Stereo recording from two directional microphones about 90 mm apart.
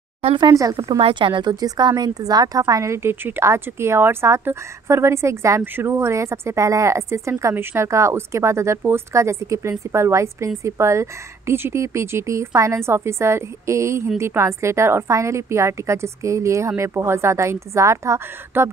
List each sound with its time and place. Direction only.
0.4 s speech: 45° right (ahead or behind)
1.0 s a woman's voice: 70° right (ahead or behind); by 18.7 s 30° right (ahead or behind)